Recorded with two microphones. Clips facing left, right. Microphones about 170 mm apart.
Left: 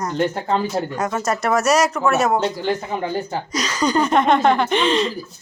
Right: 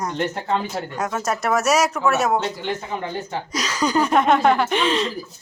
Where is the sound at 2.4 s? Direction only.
35° left (ahead or behind).